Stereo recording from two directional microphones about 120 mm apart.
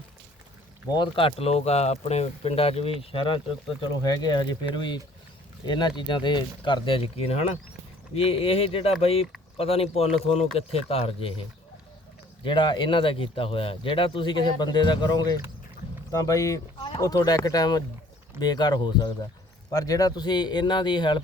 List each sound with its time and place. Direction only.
0.9 s a man's voice: 40° left (ahead or behind)
12.5 s a man's voice: 40° left (ahead or behind)